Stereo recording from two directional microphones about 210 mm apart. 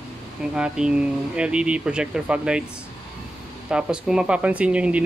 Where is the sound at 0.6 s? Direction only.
5° right (ahead or behind).